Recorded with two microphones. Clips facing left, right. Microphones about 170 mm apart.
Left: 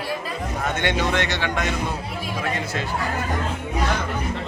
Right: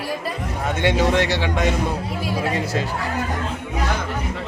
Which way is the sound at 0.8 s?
35° right (ahead or behind).